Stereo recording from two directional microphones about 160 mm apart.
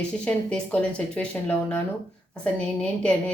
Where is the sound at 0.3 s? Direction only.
5° left (ahead or behind).